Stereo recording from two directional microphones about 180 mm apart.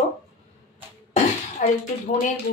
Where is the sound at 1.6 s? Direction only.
45° left (ahead or behind).